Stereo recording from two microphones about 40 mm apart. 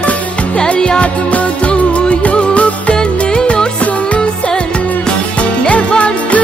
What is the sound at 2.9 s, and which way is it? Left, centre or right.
Music, centre.